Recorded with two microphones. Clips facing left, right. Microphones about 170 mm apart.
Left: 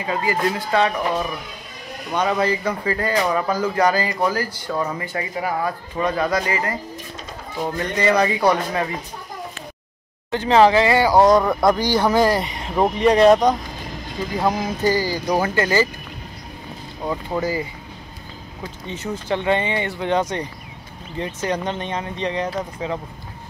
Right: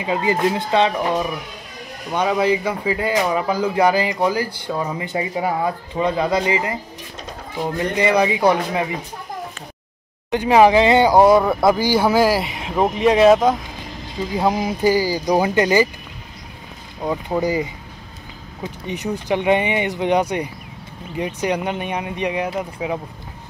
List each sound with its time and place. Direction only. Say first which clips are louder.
0.0 s speech: right 3 dB; 20° right (ahead or behind)
2.1 s speech: right 2 dB; 10° right (ahead or behind)
7.7 s speech: right 1 dB; 15° right (ahead or behind)
10.3 s speech: right 2 dB; 15° right (ahead or behind)
17.0 s speech: right 3 dB; 15° right (ahead or behind)